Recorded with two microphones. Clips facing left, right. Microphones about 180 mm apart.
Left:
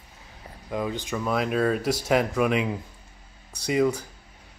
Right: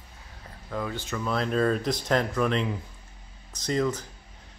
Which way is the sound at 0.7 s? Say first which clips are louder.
Left 3 dB; 15° left (ahead or behind).